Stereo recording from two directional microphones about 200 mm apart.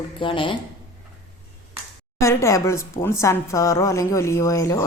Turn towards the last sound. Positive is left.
turn(degrees=15)  # may be behind; listen again after turning